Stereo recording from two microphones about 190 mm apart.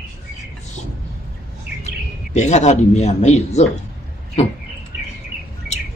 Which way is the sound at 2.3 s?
35° left (ahead or behind).